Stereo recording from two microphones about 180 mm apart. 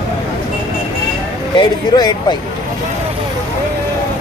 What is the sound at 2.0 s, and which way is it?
Speech, 25° left (ahead or behind).